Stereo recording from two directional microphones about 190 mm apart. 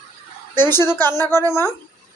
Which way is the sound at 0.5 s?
10° left (ahead or behind).